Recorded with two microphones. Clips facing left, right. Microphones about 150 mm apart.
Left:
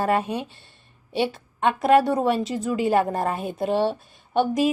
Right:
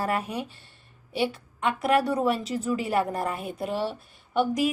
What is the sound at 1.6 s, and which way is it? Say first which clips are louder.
A woman's voice: left 5 dB; 20° left (ahead or behind).